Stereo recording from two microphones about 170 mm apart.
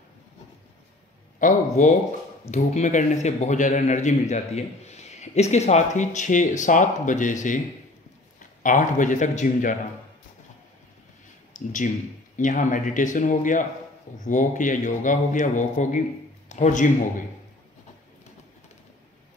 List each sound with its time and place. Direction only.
1.4 s a man's voice: 45° left (ahead or behind)
11.5 s a man's voice: 50° left (ahead or behind)